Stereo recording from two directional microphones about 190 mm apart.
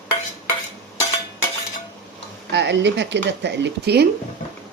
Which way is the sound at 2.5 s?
65° right (ahead or behind).